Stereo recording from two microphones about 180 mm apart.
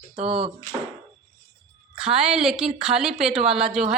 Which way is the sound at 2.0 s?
5° right (ahead or behind).